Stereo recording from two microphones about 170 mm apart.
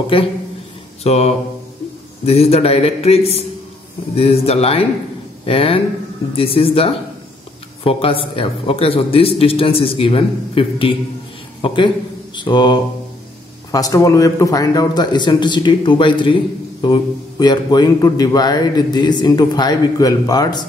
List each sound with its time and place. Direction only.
0.1 s a man's voice: 30° left (ahead or behind)